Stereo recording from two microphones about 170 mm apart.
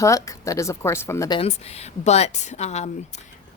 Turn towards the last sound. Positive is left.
turn(degrees=40)  # may be behind; listen again after turning